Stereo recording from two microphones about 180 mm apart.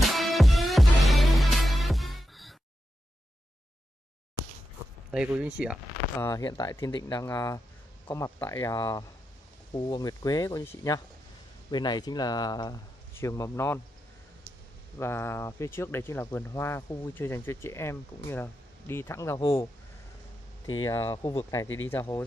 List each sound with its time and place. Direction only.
0.0 s music: centre (ahead or behind)
5.1 s speech: 5° right (ahead or behind)
6.1 s speech: 15° left (ahead or behind)
15.0 s speech: 15° left (ahead or behind)